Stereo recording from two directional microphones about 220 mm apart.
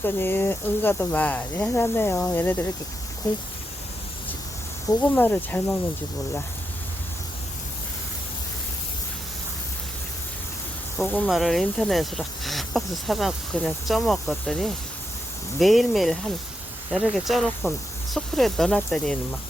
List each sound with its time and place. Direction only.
0.0 s speech: 10° left (ahead or behind)
4.9 s speech: 10° left (ahead or behind)
11.0 s speech: centre (ahead or behind)